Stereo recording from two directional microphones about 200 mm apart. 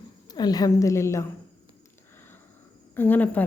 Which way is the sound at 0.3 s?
20° left (ahead or behind).